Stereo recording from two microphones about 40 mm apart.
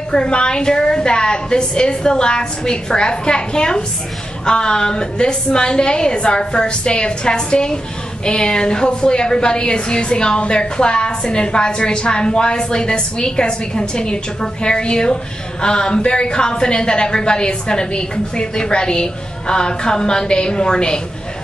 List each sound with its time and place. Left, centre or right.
0.1 s a woman's voice: left